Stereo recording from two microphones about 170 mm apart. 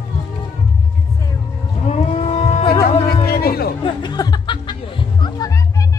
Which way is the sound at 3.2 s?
65° left (ahead or behind).